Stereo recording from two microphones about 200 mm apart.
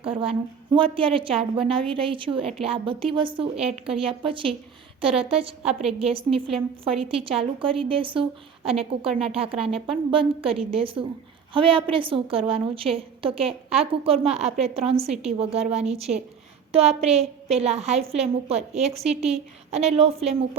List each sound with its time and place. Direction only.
0.0 s a woman's voice: 25° right (ahead or behind)